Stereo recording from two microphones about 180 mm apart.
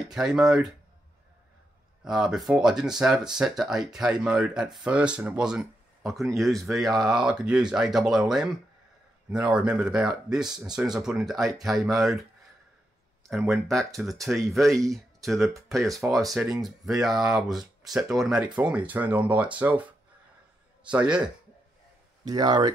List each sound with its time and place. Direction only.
0.1 s speech: 5° right (ahead or behind)
2.0 s speech: centre (ahead or behind)
13.3 s speech: centre (ahead or behind)
20.9 s speech: 5° right (ahead or behind)
22.3 s speech: 25° right (ahead or behind)